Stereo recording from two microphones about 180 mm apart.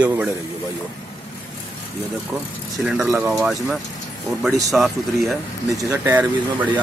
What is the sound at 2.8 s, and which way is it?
Speech, 5° right (ahead or behind).